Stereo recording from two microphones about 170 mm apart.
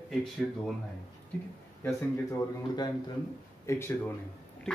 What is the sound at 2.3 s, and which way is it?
A man's voice, 25° left (ahead or behind).